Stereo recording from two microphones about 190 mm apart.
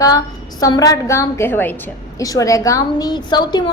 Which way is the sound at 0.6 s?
20° left (ahead or behind).